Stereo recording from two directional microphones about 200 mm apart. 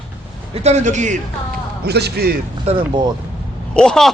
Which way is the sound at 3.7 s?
5° left (ahead or behind).